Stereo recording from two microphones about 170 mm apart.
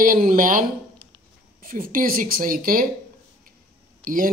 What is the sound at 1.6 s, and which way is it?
Speech, 55° right (ahead or behind).